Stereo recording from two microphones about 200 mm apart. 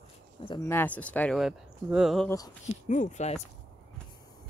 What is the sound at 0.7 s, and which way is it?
Speech, 10° left (ahead or behind).